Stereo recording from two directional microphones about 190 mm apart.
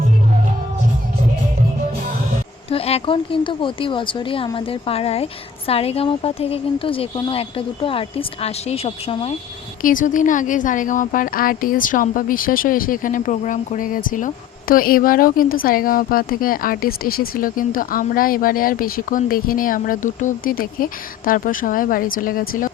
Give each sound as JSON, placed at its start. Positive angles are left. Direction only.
{"t": 2.6, "sound": "speech", "side_deg": 30}
{"t": 9.8, "sound": "a woman's voice", "side_deg": 45}